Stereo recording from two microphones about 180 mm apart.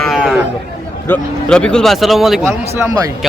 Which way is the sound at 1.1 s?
5° left (ahead or behind).